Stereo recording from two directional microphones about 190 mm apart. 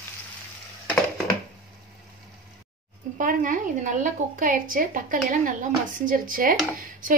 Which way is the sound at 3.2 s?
45° right (ahead or behind).